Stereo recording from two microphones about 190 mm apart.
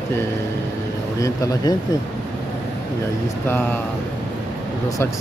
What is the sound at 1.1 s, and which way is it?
Speech, 15° left (ahead or behind).